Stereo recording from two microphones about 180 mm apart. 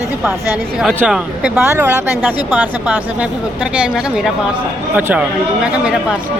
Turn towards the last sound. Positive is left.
turn(degrees=-10)  # may be behind; listen again after turning